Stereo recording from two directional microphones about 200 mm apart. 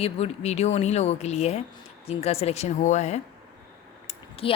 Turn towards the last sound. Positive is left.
turn(degrees=25)  # may be behind; listen again after turning